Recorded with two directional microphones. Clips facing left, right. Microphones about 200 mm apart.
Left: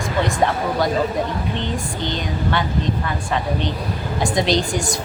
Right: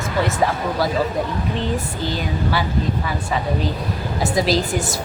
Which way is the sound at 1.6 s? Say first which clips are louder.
Right 1 dB; 5° right (ahead or behind).